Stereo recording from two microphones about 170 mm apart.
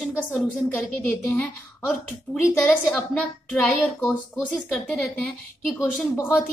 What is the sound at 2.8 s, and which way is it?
A woman's voice, 5° left (ahead or behind).